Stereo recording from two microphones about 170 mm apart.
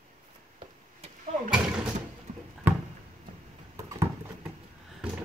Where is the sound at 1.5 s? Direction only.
5° right (ahead or behind).